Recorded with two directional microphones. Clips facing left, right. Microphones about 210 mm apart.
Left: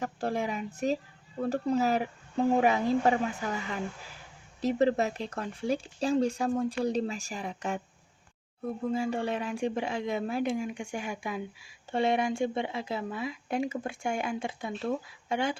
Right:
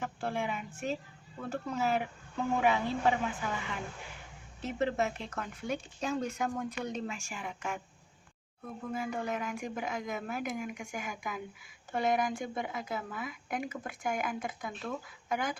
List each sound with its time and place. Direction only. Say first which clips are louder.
0.0 s speech: left 4 dB; 40° left (ahead or behind)